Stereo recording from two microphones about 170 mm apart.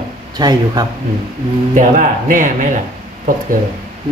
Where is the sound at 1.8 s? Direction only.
50° right (ahead or behind).